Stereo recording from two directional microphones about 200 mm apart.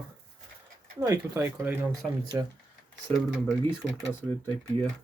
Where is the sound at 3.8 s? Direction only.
10° right (ahead or behind).